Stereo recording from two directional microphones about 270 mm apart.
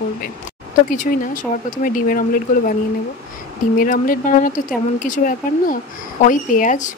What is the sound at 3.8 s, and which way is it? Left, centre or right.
Speech, left.